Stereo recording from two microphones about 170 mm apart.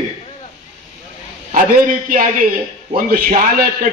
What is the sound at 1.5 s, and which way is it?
A man's voice, 50° right (ahead or behind).